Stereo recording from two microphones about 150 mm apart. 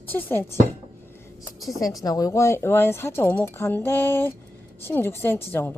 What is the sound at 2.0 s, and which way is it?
A woman's voice, 25° left (ahead or behind).